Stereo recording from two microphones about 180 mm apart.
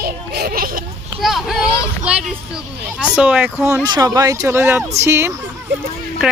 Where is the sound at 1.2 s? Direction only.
Centre (ahead or behind).